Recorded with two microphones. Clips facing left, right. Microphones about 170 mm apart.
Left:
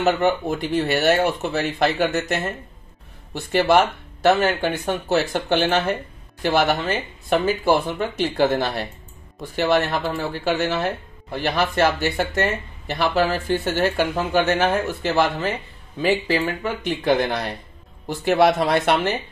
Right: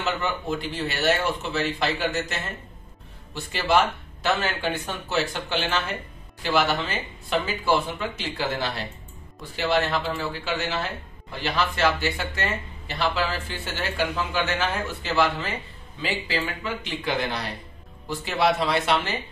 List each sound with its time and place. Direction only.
0.0 s speech: 55° left (ahead or behind)
3.5 s speech: 50° left (ahead or behind)